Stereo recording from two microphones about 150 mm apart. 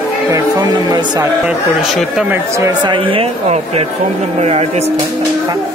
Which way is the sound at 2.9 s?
35° right (ahead or behind).